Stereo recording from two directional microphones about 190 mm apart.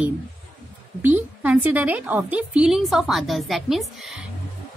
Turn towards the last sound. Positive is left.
turn(degrees=0)  # may be behind; listen again after turning